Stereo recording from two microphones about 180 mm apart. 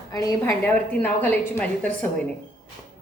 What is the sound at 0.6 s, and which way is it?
A woman's voice, 10° left (ahead or behind).